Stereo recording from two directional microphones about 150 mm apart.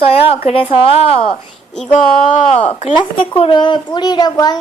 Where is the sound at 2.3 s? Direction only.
45° left (ahead or behind).